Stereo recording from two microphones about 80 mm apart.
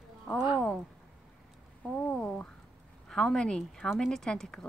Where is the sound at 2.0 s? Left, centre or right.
Centre.